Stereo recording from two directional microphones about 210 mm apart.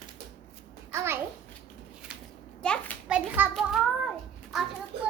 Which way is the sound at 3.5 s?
Centre (ahead or behind).